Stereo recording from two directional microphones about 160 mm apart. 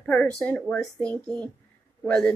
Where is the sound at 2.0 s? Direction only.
10° left (ahead or behind).